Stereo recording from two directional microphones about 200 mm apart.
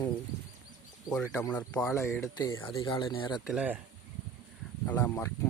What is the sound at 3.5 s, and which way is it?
Speech, 5° right (ahead or behind).